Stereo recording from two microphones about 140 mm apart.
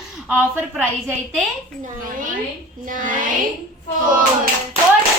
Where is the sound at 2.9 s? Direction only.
75° right (ahead or behind).